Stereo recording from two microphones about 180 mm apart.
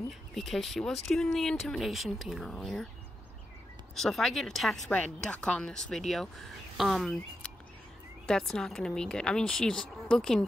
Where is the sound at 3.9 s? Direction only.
Centre (ahead or behind).